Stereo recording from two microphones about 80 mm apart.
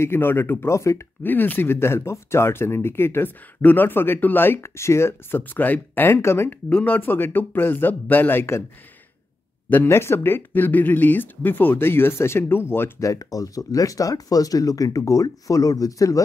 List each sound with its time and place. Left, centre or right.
0.0 s speech: left
1.2 s speech: left
5.4 s speech: left
6.7 s speech: centre
9.8 s speech: left
13.0 s speech: left